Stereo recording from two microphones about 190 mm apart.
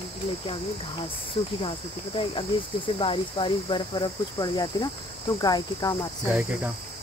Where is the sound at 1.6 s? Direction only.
25° left (ahead or behind).